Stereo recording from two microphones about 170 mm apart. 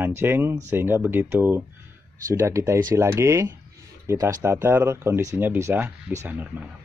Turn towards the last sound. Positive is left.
turn(degrees=-10)  # may be behind; listen again after turning